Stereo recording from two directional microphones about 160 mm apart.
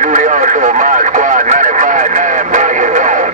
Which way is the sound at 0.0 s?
50° right (ahead or behind).